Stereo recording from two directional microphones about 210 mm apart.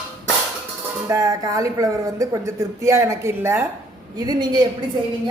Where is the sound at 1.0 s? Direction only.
15° right (ahead or behind).